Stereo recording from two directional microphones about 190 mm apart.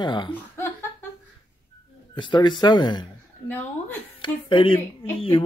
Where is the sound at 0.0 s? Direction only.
25° left (ahead or behind).